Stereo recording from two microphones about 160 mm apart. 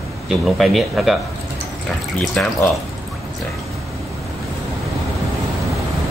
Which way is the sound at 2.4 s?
10° left (ahead or behind).